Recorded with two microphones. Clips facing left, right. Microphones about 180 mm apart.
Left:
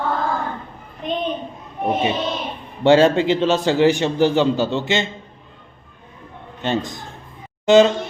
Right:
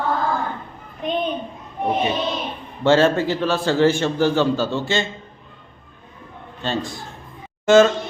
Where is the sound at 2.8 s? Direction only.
15° left (ahead or behind).